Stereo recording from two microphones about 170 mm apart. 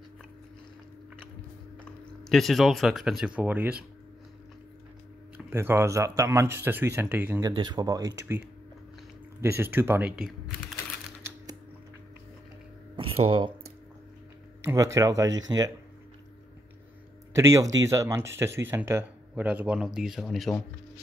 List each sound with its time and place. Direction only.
2.2 s speech: centre (ahead or behind)
5.5 s speech: 15° right (ahead or behind)
7.4 s speech: 25° right (ahead or behind); by 10.3 s 5° right (ahead or behind)
12.9 s a sound: 30° right (ahead or behind)
14.6 s speech: 15° right (ahead or behind)
17.3 s speech: 15° right (ahead or behind); by 20.5 s centre (ahead or behind)